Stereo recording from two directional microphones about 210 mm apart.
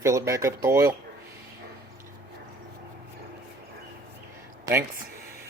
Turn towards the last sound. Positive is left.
turn(degrees=-10)  # may be behind; listen again after turning